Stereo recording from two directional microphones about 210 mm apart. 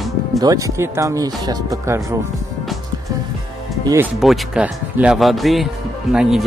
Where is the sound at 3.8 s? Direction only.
15° right (ahead or behind).